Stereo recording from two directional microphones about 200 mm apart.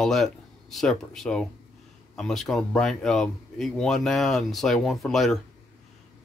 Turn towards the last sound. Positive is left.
turn(degrees=0)  # may be behind; listen again after turning